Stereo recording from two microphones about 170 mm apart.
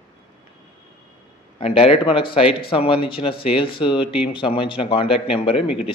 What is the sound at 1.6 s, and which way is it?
Speech, 35° left (ahead or behind).